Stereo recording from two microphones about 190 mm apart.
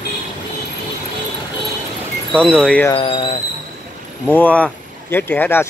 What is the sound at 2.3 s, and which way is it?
Speech, 5° left (ahead or behind).